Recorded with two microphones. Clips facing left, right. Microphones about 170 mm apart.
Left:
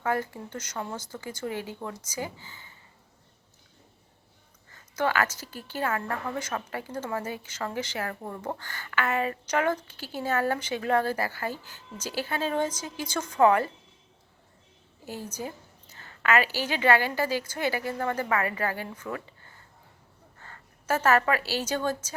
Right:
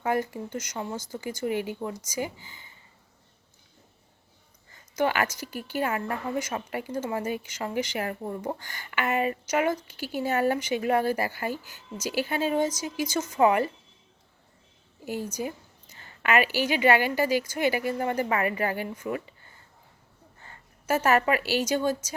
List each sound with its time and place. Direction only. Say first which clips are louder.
0.0 s a woman's voice: right 2 dB; 15° right (ahead or behind)
4.9 s a woman's voice: right 1 dB; 15° right (ahead or behind)
15.0 s a woman's voice: right 4 dB; 15° right (ahead or behind)
20.5 s a woman's voice: right 2 dB; 10° right (ahead or behind)